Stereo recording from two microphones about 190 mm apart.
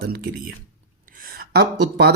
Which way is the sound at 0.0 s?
55° right (ahead or behind).